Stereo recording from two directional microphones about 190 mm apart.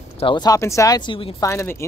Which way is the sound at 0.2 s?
25° left (ahead or behind).